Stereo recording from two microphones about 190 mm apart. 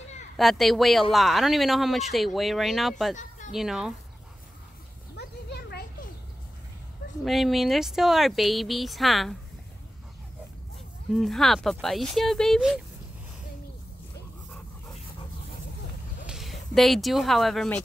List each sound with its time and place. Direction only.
0.4 s speech: centre (ahead or behind)
3.2 s a sound: 40° left (ahead or behind)
3.5 s speech: centre (ahead or behind)
5.1 s a sound: 60° left (ahead or behind)
7.2 s speech: centre (ahead or behind)
11.1 s speech: centre (ahead or behind)
16.3 s speech: centre (ahead or behind)